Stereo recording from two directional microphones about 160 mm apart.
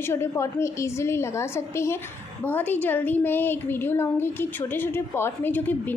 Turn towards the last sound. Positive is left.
turn(degrees=10)  # may be behind; listen again after turning